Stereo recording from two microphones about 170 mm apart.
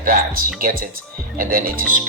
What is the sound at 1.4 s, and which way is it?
Speech, 55° right (ahead or behind).